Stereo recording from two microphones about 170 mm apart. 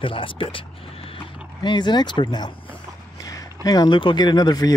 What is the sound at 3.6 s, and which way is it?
Speech, 25° left (ahead or behind).